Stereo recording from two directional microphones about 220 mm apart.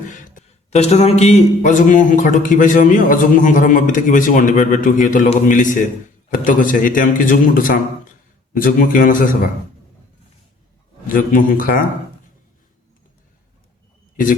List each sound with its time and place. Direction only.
0.1 s a man's voice: 35° left (ahead or behind)
11.1 s a man's voice: 40° left (ahead or behind)